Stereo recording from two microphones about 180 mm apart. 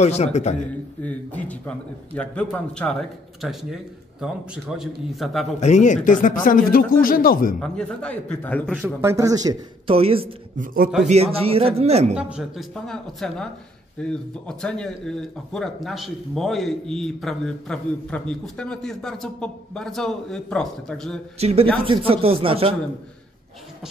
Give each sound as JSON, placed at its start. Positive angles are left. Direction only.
{"t": 0.0, "sound": "a man's voice", "side_deg": 40}
{"t": 1.0, "sound": "speech", "side_deg": 10}
{"t": 5.6, "sound": "a man's voice", "side_deg": 40}
{"t": 7.6, "sound": "a man's voice", "side_deg": 5}
{"t": 8.8, "sound": "speech", "side_deg": -15}
{"t": 9.8, "sound": "speech", "side_deg": -30}
{"t": 10.6, "sound": "a man's voice", "side_deg": -55}
{"t": 11.1, "sound": "speech", "side_deg": -35}
{"t": 12.2, "sound": "speech", "side_deg": -5}
{"t": 21.4, "sound": "speech", "side_deg": -35}